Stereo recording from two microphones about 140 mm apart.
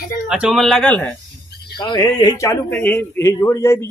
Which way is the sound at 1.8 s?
30° left (ahead or behind).